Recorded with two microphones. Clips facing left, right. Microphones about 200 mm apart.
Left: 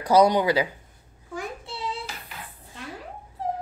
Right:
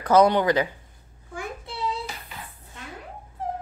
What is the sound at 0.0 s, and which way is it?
Speech, 10° left (ahead or behind).